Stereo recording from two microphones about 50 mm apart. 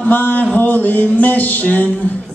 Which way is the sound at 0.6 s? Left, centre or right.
Left.